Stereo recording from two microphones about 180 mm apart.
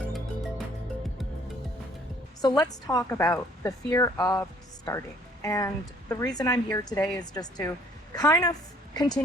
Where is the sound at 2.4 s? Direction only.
20° left (ahead or behind).